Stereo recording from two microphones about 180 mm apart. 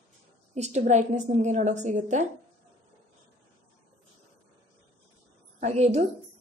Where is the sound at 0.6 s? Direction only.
40° right (ahead or behind).